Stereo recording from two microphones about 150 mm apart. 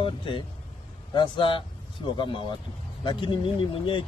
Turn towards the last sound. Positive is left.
turn(degrees=35)  # may be behind; listen again after turning